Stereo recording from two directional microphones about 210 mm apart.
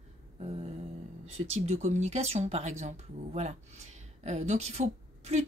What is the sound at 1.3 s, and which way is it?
Speech, 30° right (ahead or behind).